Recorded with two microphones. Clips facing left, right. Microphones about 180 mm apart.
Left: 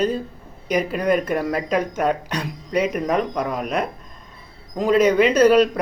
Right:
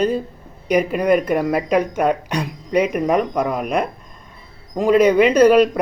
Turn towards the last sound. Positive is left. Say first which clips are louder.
# right 2 dB
turn(degrees=-10)  # may be behind; listen again after turning